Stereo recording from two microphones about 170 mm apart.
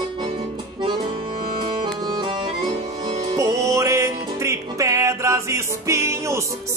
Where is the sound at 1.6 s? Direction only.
25° right (ahead or behind).